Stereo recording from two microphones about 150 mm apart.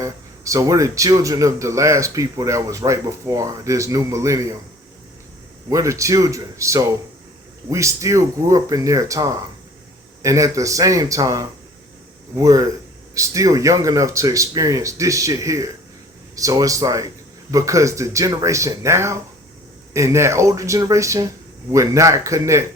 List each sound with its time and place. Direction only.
0.0 s speech: 20° right (ahead or behind)
5.6 s speech: 20° right (ahead or behind)